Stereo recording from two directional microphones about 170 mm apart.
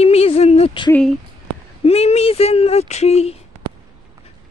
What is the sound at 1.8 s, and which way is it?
Speech, 35° left (ahead or behind).